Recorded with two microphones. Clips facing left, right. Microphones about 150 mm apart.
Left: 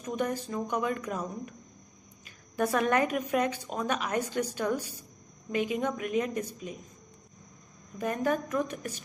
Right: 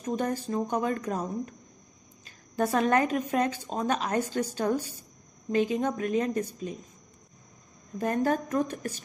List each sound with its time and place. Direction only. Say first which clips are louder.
0.0 s a woman's voice: right 2 dB; 35° right (ahead or behind)
2.5 s a woman's voice: right 2 dB; 25° right (ahead or behind)
8.0 s a woman's voice: right 2 dB; 35° right (ahead or behind)